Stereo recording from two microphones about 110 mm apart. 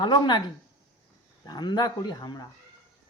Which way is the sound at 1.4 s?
40° left (ahead or behind).